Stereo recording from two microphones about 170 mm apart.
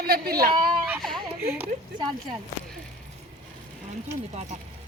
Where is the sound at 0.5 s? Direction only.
25° right (ahead or behind).